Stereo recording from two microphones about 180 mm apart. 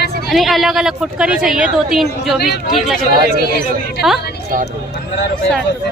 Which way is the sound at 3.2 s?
55° right (ahead or behind).